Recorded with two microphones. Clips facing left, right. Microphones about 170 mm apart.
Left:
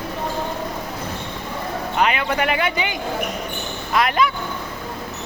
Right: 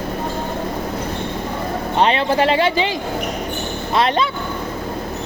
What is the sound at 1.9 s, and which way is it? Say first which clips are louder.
Speech: right 4 dB; 30° right (ahead or behind).